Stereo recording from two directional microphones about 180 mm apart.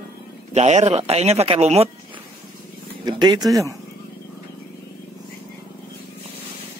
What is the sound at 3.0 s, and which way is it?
Speech, 20° right (ahead or behind).